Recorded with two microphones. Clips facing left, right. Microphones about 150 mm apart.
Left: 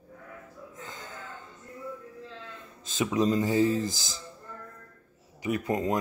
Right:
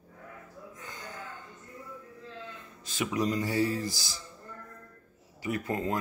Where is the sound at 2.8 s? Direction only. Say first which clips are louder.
Left 4 dB; 20° left (ahead or behind).